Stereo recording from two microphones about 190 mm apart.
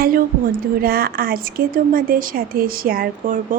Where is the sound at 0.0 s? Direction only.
50° right (ahead or behind).